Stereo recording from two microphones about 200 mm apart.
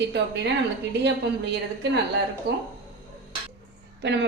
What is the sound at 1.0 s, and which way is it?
A woman's voice, 60° right (ahead or behind).